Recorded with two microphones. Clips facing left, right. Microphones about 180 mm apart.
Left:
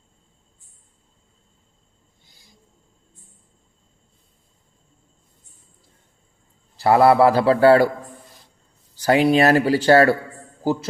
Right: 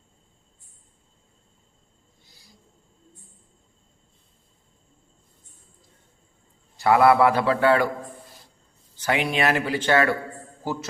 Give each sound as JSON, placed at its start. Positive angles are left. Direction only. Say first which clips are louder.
{"t": 6.7, "sound": "speech", "louder": "left 3 dB", "side_deg": 30}
{"t": 9.0, "sound": "a man's voice", "louder": "left 8 dB", "side_deg": 35}